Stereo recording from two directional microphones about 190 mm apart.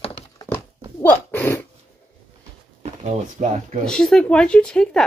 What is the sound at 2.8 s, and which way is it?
Speech, 40° right (ahead or behind).